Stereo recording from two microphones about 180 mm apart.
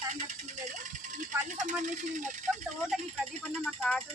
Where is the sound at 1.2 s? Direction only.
45° right (ahead or behind).